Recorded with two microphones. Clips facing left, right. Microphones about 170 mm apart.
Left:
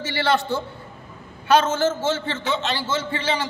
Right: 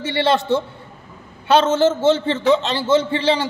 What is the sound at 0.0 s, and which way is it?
A man's voice, 25° right (ahead or behind).